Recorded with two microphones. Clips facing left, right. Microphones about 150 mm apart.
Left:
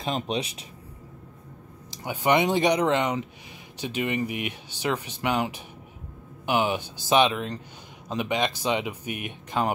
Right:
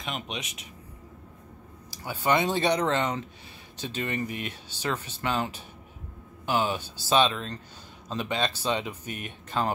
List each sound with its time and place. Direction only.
0.0 s speech: 35° left (ahead or behind)
1.9 s speech: 15° left (ahead or behind)